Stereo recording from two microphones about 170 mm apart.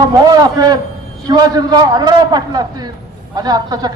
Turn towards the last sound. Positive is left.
turn(degrees=-25)  # may be behind; listen again after turning